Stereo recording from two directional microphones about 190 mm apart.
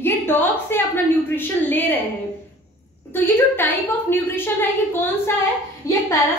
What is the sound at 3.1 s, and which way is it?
A woman's voice, 10° left (ahead or behind).